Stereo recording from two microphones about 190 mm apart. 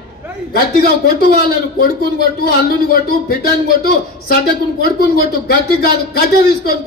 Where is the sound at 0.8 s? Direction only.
55° left (ahead or behind).